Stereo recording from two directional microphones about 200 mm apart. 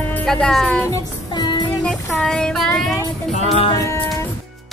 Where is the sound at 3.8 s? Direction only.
15° left (ahead or behind).